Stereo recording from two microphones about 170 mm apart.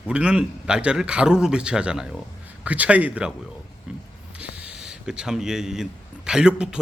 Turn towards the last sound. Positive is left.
turn(degrees=-5)  # may be behind; listen again after turning